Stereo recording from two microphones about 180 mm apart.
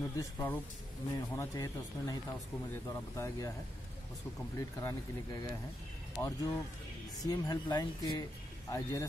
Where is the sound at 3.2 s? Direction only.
15° left (ahead or behind).